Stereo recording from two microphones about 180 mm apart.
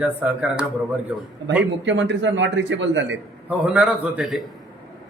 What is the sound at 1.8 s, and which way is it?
Speech, 80° right.